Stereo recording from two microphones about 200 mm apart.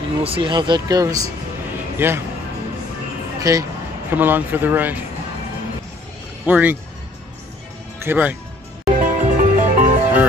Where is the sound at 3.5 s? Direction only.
15° right (ahead or behind).